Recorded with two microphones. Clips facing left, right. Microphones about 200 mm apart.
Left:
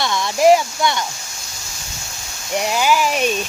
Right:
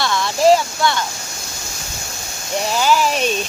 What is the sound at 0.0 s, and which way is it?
Speech, 20° left (ahead or behind).